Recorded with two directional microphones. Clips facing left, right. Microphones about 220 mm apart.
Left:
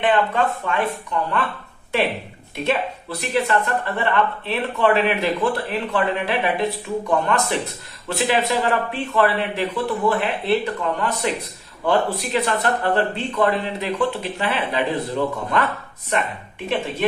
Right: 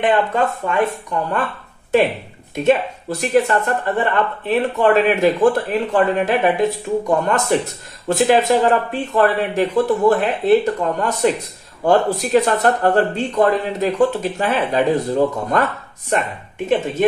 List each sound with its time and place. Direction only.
0.7 s speech: 45° right (ahead or behind)
2.5 s speech: 45° right (ahead or behind)